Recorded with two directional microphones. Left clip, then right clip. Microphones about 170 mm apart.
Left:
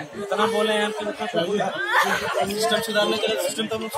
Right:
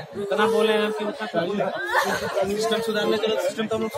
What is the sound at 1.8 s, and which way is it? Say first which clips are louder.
Speech: left 3 dB; 45° right (ahead or behind).